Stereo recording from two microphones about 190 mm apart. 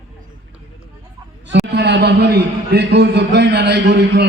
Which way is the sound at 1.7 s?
65° right (ahead or behind).